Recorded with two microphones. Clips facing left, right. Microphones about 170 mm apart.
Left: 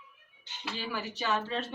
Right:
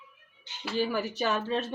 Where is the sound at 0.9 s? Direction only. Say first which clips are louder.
Right 6 dB; 45° right (ahead or behind).